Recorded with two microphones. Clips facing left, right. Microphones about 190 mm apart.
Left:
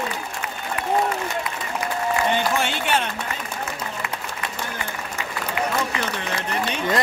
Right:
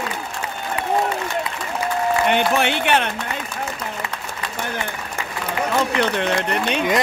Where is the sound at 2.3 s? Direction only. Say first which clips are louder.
Right 4 dB; 65° right (ahead or behind).